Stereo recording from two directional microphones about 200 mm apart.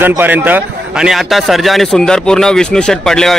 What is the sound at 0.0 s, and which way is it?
A man's voice, 10° right (ahead or behind).